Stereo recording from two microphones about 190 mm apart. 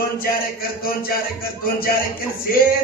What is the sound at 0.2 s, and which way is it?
Speech, 50° left (ahead or behind).